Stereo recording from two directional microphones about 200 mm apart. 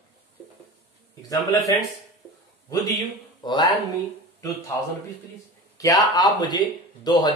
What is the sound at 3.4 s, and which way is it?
Speech, 20° left (ahead or behind).